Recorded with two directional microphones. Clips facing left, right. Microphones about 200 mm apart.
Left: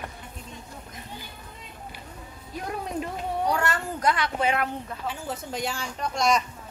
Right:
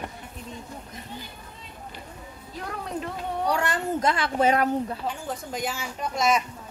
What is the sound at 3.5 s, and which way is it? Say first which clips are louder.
Speech: right 3 dB; 15° right (ahead or behind).